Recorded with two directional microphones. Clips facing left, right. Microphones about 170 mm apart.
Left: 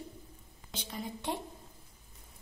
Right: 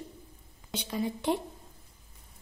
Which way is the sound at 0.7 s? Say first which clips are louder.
Right 8 dB; 85° right.